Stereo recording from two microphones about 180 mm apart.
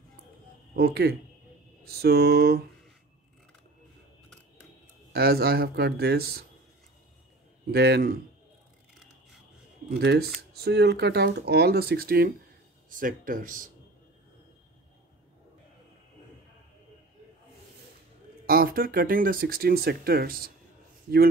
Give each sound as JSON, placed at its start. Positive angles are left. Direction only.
{"t": 0.7, "sound": "speech", "side_deg": -60}
{"t": 5.1, "sound": "speech", "side_deg": -60}
{"t": 7.7, "sound": "speech", "side_deg": -65}
{"t": 9.8, "sound": "speech", "side_deg": -65}
{"t": 18.5, "sound": "speech", "side_deg": -55}